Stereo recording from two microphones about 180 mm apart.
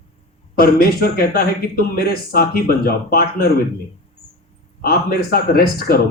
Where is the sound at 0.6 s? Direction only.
55° left (ahead or behind).